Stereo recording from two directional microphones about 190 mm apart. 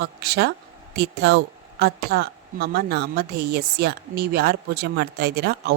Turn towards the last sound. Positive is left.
turn(degrees=-60)  # may be behind; listen again after turning